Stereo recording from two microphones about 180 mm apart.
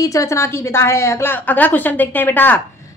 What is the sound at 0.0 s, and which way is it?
A woman's voice, 15° left (ahead or behind).